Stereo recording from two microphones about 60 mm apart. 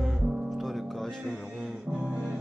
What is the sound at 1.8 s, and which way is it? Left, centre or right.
Music, right.